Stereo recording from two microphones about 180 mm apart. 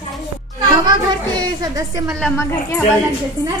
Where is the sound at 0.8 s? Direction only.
25° right (ahead or behind).